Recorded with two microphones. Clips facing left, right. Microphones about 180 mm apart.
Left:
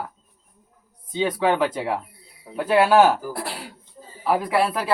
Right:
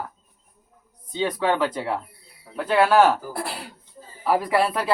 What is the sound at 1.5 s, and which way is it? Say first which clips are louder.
Speech: left 2 dB; 20° left (ahead or behind).